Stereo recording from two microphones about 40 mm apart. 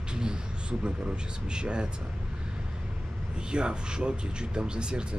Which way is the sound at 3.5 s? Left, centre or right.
Right.